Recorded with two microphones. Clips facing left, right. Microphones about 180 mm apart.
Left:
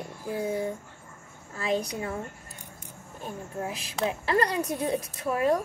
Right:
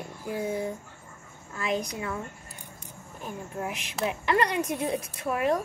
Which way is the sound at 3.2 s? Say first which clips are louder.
Even; 30° left (ahead or behind).